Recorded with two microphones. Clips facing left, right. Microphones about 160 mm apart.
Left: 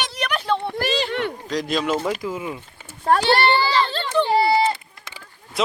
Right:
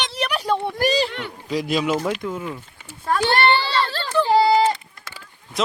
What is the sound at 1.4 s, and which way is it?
Speech, 5° right (ahead or behind).